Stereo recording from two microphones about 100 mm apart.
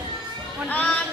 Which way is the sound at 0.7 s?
15° left (ahead or behind).